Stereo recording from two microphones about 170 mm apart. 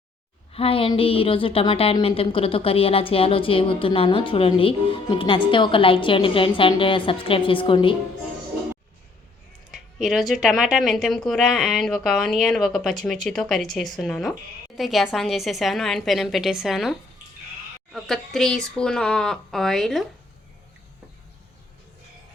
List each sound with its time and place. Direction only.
0.5 s a woman's voice: 35° left (ahead or behind)
9.7 s speech: centre (ahead or behind)
17.9 s speech: centre (ahead or behind)